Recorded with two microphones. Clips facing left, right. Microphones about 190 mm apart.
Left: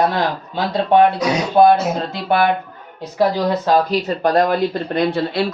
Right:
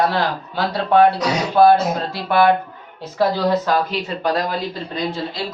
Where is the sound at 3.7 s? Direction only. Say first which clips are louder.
Left 4 dB; 40° left (ahead or behind); by 5.5 s 65° left (ahead or behind).